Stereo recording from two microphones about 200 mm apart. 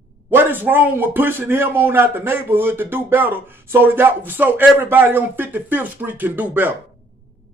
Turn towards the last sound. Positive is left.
turn(degrees=-10)  # may be behind; listen again after turning